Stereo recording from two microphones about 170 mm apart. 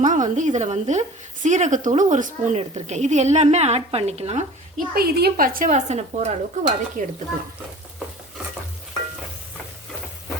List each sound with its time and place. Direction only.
0.0 s a woman's voice: 50° right (ahead or behind)
4.9 s a woman's voice: 70° right (ahead or behind); by 7.0 s 40° right (ahead or behind)